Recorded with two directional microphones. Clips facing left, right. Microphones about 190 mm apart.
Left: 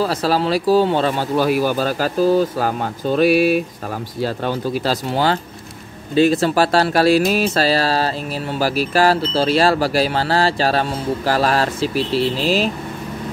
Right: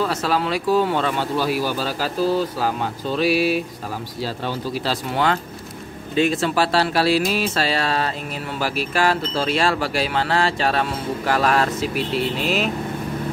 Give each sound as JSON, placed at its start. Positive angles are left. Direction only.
{"t": 0.0, "sound": "speech", "side_deg": 35}
{"t": 1.3, "sound": "speech", "side_deg": 50}
{"t": 5.1, "sound": "speech", "side_deg": 30}